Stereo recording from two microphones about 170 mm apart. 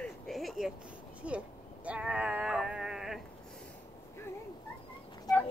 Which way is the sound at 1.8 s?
5° right (ahead or behind).